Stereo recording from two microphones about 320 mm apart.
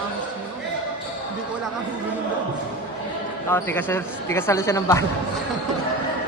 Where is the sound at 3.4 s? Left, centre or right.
Centre.